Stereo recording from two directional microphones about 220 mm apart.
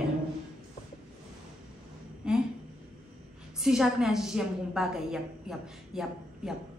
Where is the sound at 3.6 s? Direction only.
5° right (ahead or behind).